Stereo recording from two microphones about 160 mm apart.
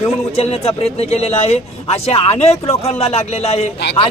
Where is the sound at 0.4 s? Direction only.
40° left (ahead or behind).